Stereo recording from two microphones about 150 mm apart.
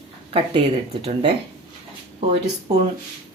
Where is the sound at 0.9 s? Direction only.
40° right (ahead or behind).